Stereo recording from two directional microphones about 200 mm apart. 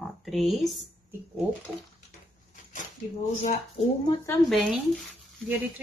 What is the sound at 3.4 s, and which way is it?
Speech, 30° left (ahead or behind).